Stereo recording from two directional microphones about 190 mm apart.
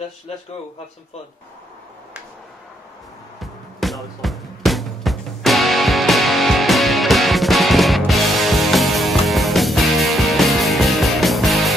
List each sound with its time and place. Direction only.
3.3 s music: centre (ahead or behind)